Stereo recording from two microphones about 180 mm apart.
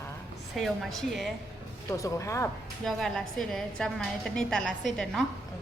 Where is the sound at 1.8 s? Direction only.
15° left (ahead or behind).